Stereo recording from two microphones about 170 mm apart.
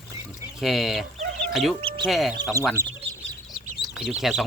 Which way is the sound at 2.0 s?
Centre (ahead or behind).